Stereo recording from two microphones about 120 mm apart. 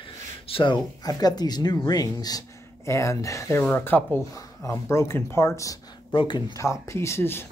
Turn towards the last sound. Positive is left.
turn(degrees=20)  # may be behind; listen again after turning